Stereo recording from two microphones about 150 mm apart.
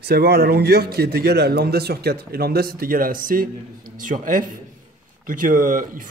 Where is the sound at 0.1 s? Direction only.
90° right.